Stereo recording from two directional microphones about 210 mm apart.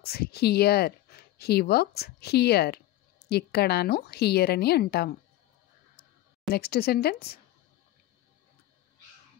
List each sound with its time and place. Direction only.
0.0 s speech: 50° left (ahead or behind)
6.5 s speech: 45° left (ahead or behind)